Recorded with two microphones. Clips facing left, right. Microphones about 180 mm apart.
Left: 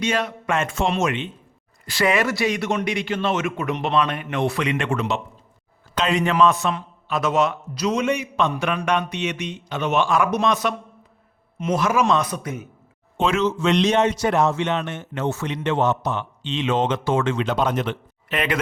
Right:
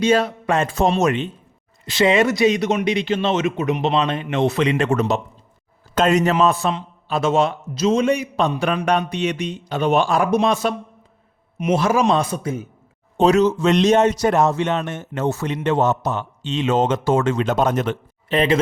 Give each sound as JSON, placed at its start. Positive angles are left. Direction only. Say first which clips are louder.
{"t": 0.0, "sound": "a man's voice", "louder": "right 6 dB", "side_deg": -30}
{"t": 1.8, "sound": "speech", "louder": "right 4 dB", "side_deg": -25}
{"t": 6.4, "sound": "a man's voice", "louder": "even", "side_deg": -35}
{"t": 13.1, "sound": "a man's voice", "louder": "right 6 dB", "side_deg": -40}
{"t": 18.3, "sound": "speech", "louder": "right 6 dB", "side_deg": -30}